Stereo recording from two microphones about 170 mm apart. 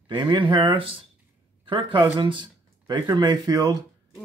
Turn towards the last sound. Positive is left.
turn(degrees=-25)  # may be behind; listen again after turning